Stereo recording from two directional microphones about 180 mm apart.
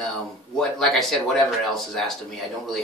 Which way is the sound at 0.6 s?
Centre (ahead or behind).